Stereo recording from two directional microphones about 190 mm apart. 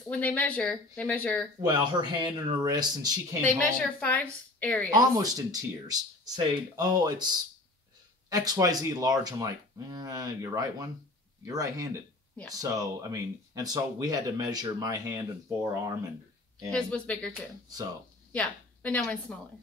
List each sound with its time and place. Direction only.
0.1 s a woman's voice: 10° left (ahead or behind)
1.7 s speech: 25° right (ahead or behind)
3.4 s a woman's voice: 5° left (ahead or behind)
4.9 s speech: 20° right (ahead or behind)
8.3 s speech: 20° right (ahead or behind)
16.7 s speech: 5° left (ahead or behind)
18.3 s a woman's voice: 5° left (ahead or behind)